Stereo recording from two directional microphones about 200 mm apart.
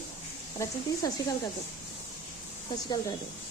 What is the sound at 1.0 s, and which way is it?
Speech, 20° left (ahead or behind).